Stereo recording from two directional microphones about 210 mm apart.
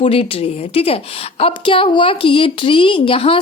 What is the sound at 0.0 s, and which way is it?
A woman's voice, 25° left (ahead or behind).